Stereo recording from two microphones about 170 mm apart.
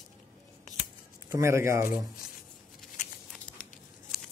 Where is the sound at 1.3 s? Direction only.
15° right (ahead or behind).